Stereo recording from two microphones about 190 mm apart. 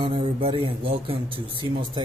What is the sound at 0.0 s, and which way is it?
Speech, 30° right (ahead or behind).